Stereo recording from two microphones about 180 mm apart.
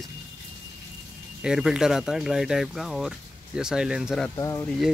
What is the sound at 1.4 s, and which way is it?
Speech, 5° right (ahead or behind).